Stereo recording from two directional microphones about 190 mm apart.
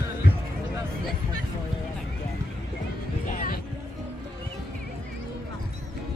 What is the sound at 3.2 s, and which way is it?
Music, 45° left (ahead or behind).